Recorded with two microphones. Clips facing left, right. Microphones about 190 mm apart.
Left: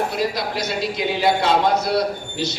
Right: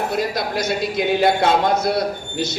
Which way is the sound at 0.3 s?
50° right (ahead or behind).